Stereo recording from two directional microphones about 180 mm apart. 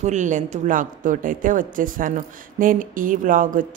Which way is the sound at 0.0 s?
40° right (ahead or behind).